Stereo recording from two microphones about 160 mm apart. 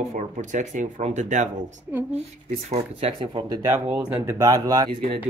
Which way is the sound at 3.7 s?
10° right (ahead or behind).